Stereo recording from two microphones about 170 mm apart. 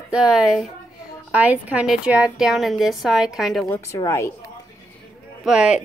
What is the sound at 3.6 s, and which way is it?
Child singing, 20° left (ahead or behind).